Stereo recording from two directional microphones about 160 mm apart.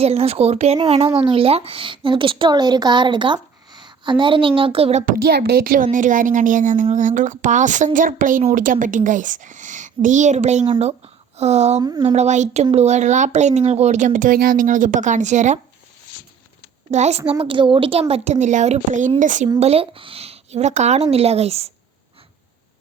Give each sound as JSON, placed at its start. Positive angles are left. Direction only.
{"t": 0.0, "sound": "speech", "side_deg": -40}
{"t": 5.0, "sound": "a woman's voice", "side_deg": -65}
{"t": 11.8, "sound": "speech", "side_deg": -25}
{"t": 12.0, "sound": "speech", "side_deg": -45}
{"t": 16.9, "sound": "speech", "side_deg": -45}
{"t": 18.1, "sound": "speech", "side_deg": -45}
{"t": 19.5, "sound": "speech", "side_deg": -40}